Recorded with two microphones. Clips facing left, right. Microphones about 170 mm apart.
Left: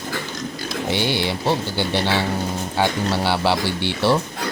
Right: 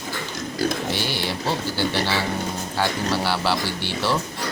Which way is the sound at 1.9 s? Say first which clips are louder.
Left 3 dB; 15° left (ahead or behind).